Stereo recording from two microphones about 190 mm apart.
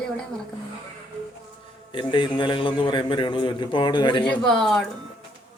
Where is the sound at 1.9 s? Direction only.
25° left (ahead or behind).